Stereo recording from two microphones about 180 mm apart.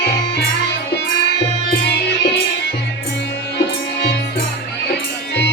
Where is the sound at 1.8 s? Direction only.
65° left (ahead or behind).